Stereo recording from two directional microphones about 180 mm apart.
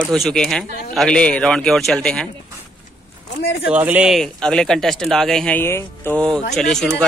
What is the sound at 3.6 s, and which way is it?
A man's voice, 10° right (ahead or behind).